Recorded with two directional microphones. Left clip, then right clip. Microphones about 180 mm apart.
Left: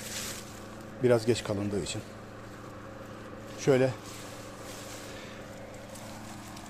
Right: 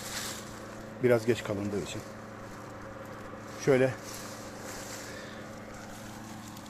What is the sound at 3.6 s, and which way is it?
Speech, 10° left (ahead or behind).